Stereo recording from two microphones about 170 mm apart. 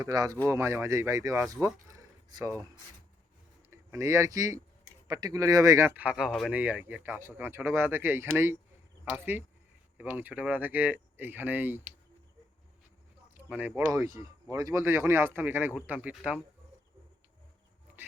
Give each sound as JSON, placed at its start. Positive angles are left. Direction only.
{"t": 0.0, "sound": "speech", "side_deg": -20}
{"t": 3.7, "sound": "speech", "side_deg": -15}
{"t": 13.3, "sound": "speech", "side_deg": -10}